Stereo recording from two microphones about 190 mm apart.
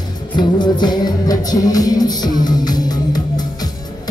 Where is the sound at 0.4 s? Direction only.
20° left (ahead or behind).